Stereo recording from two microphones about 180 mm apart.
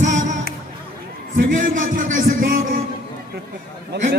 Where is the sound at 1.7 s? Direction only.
45° right (ahead or behind).